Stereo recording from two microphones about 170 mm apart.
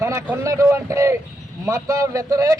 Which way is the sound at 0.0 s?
15° right (ahead or behind).